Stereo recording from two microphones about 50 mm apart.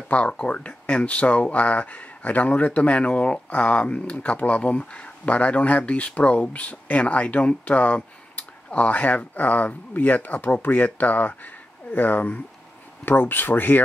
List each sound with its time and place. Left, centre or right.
0.1 s speech: left